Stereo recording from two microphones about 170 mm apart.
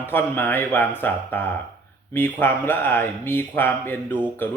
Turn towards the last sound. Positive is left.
turn(degrees=10)  # may be behind; listen again after turning